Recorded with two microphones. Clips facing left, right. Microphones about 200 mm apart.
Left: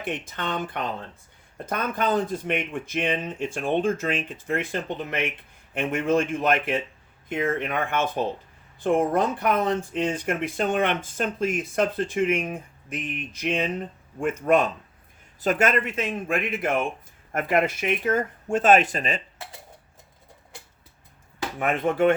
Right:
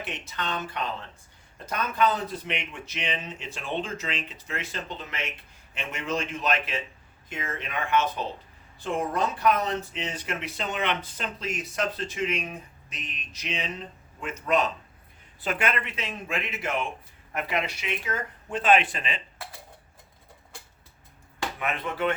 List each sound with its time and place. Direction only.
0.0 s a man's voice: 50° left (ahead or behind)
15.4 s speech: 40° left (ahead or behind)
21.6 s speech: 50° left (ahead or behind)